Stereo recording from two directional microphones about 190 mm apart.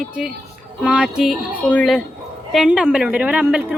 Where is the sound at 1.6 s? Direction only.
10° left (ahead or behind).